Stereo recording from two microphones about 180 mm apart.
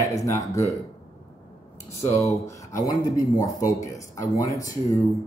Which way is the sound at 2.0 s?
15° left (ahead or behind).